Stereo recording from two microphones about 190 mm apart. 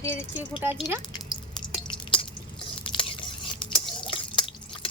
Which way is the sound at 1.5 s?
25° left (ahead or behind).